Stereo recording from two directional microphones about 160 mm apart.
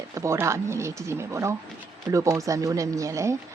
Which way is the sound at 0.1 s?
20° right (ahead or behind).